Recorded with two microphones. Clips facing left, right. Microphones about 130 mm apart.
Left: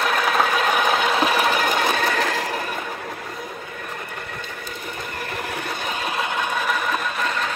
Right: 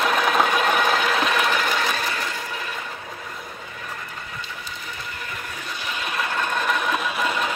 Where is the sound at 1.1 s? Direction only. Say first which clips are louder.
Left 2 dB; 30° left (ahead or behind).